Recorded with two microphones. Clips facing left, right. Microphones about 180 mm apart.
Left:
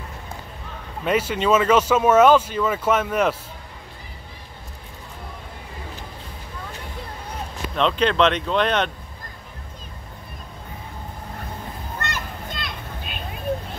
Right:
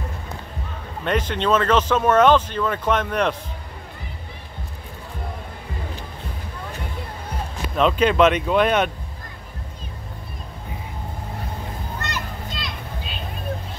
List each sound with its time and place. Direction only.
1.0 s speech: 5° left (ahead or behind)
7.7 s speech: 5° right (ahead or behind)
12.1 s children playing: 50° left (ahead or behind)